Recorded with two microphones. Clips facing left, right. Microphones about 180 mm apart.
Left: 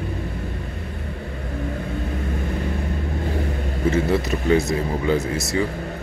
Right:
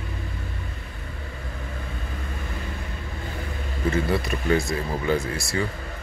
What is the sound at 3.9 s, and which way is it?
Speech, 25° left (ahead or behind).